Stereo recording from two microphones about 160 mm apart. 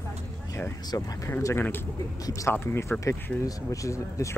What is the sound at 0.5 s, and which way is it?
Speech, 20° left (ahead or behind).